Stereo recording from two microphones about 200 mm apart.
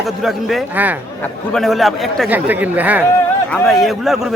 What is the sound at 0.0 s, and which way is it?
Speech, centre (ahead or behind).